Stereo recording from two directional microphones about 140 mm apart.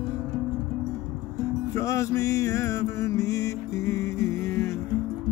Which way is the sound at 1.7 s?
20° left (ahead or behind).